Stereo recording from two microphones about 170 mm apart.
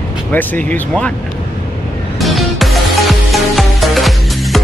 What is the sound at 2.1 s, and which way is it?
Music, centre (ahead or behind).